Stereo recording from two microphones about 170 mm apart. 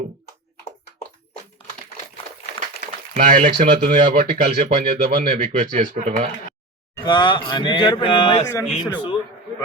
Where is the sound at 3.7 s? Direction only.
55° right (ahead or behind).